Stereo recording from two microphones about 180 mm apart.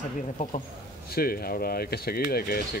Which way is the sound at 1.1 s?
55° left (ahead or behind).